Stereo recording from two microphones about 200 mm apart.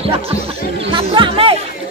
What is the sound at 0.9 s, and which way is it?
Music, 25° right (ahead or behind).